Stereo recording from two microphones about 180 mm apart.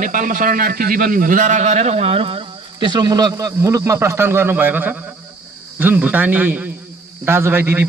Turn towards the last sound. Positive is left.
turn(degrees=-10)  # may be behind; listen again after turning